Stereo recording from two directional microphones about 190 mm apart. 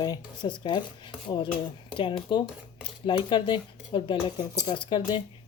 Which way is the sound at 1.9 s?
25° left (ahead or behind).